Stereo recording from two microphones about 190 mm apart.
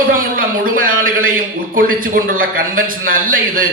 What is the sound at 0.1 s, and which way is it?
A man's voice, 45° right (ahead or behind).